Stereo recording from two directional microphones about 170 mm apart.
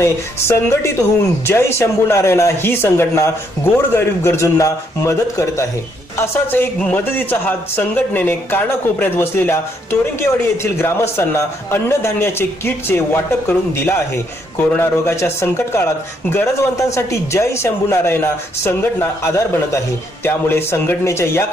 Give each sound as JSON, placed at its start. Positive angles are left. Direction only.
{"t": 0.0, "sound": "speech", "side_deg": 15}